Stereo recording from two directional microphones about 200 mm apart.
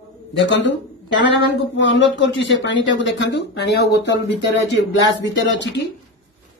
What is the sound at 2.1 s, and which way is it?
Speech, 65° left (ahead or behind).